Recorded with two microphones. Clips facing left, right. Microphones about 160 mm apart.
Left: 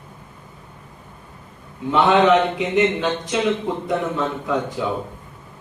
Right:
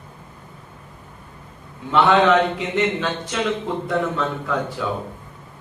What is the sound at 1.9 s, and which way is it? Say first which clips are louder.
Speech: left 1 dB; 20° left (ahead or behind).